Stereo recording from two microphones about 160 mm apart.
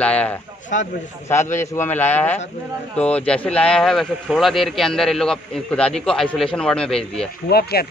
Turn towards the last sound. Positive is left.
turn(degrees=80)